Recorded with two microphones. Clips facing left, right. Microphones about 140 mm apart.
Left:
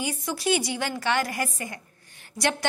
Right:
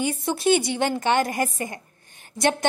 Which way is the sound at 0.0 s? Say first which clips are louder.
Right 5 dB; 25° right (ahead or behind).